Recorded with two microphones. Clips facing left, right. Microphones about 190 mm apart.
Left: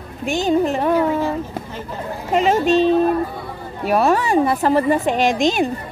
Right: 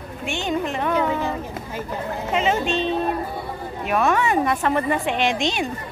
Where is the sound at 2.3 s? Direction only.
40° left (ahead or behind).